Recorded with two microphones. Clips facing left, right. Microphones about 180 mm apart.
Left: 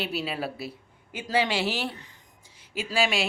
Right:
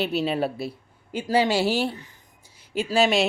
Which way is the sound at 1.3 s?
40° right (ahead or behind).